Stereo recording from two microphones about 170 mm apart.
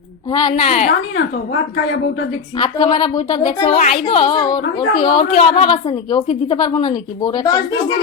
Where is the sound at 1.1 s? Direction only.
90° left.